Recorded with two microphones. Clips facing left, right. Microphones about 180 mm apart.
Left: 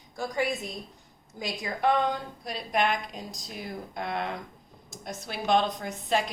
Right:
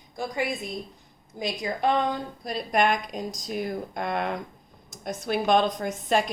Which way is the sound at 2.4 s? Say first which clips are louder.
Right 4 dB; 45° right (ahead or behind).